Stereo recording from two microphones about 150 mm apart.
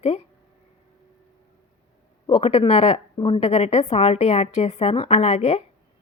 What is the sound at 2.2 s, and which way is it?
A woman's voice, 40° left (ahead or behind).